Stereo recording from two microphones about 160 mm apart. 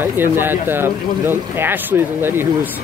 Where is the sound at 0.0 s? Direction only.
15° right (ahead or behind).